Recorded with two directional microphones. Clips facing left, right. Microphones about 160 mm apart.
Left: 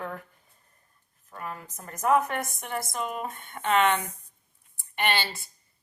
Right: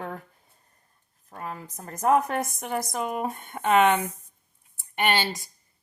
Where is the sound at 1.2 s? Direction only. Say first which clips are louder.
Right 2 dB; 35° right (ahead or behind).